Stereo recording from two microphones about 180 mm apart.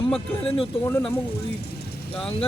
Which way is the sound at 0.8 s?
10° left (ahead or behind).